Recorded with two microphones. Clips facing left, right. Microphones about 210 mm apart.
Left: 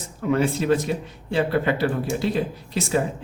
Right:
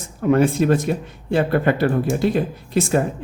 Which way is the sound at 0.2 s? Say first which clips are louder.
Right 5 dB; 50° right (ahead or behind).